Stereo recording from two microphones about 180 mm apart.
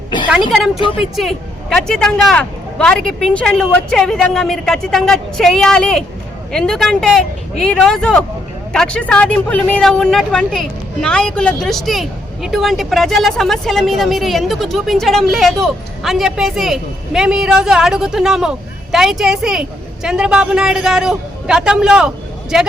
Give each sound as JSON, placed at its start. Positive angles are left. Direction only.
{"t": 0.3, "sound": "a woman's voice", "side_deg": 0}
{"t": 0.8, "sound": "a woman's voice", "side_deg": 30}
{"t": 1.1, "sound": "speech", "side_deg": 0}